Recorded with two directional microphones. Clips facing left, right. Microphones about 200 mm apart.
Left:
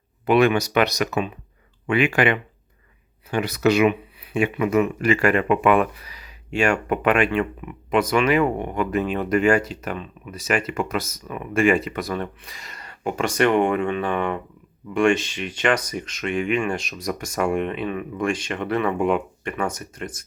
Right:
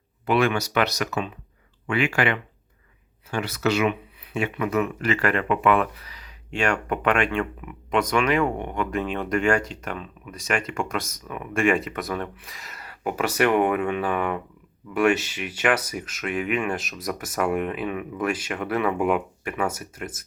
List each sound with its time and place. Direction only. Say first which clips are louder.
0.3 s speech: left 4 dB; 20° left (ahead or behind); by 20.2 s 5° right (ahead or behind)